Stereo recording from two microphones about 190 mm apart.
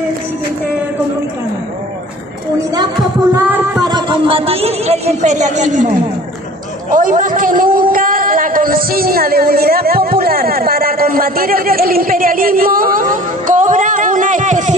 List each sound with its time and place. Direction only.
3.3 s music: 10° right (ahead or behind)
3.8 s speech: 25° right (ahead or behind); by 5.9 s 40° right (ahead or behind)
6.9 s speech: 45° right (ahead or behind)